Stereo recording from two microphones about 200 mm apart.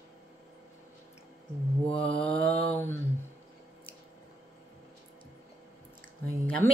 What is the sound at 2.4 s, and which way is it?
Mantra, 5° left (ahead or behind).